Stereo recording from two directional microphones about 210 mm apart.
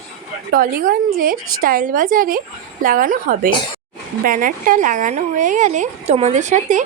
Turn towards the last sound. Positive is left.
turn(degrees=-35)  # may be behind; listen again after turning